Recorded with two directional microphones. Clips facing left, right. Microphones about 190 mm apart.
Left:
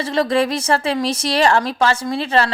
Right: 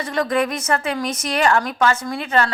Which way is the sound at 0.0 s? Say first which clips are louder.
Left 3 dB; 25° left (ahead or behind).